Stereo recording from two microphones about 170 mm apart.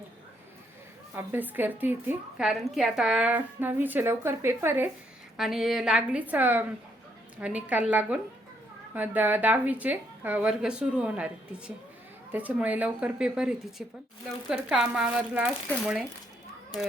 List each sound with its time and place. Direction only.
1.1 s a woman's voice: 10° right (ahead or behind)
5.4 s a woman's voice: centre (ahead or behind)